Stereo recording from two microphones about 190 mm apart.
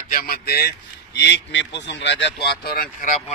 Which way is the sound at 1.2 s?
65° left (ahead or behind).